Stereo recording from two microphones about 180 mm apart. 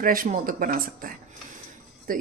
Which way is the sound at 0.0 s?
50° right (ahead or behind).